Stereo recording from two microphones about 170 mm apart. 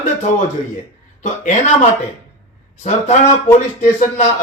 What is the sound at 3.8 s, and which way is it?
Speech, 45° left (ahead or behind).